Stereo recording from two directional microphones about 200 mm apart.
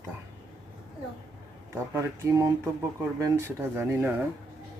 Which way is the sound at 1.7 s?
15° right (ahead or behind).